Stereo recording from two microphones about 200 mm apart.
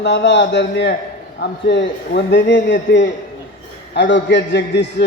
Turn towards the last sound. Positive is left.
turn(degrees=60)  # may be behind; listen again after turning